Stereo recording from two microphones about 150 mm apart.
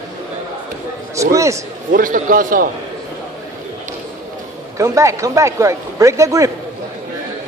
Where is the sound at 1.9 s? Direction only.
65° right (ahead or behind).